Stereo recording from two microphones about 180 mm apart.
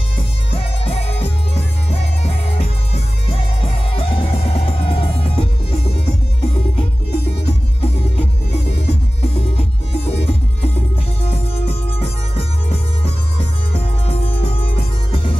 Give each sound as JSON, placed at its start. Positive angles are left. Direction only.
{"t": 0.5, "sound": "music", "side_deg": 30}